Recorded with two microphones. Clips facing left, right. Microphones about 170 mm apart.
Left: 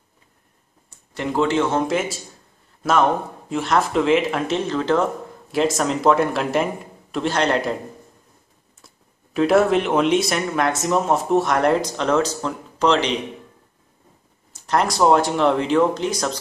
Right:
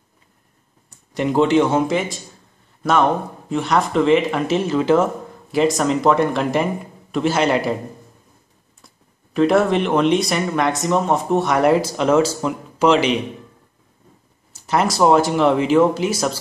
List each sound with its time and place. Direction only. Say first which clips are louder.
0.8 s speech: right 5 dB; 15° right (ahead or behind)
1.9 s speech: right 1 dB; centre (ahead or behind)
8.8 s speech: right 1 dB; centre (ahead or behind)
14.5 s speech: right 1 dB; 5° right (ahead or behind)